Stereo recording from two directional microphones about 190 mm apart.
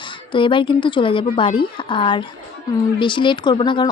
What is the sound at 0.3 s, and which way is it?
Speech, 25° left (ahead or behind).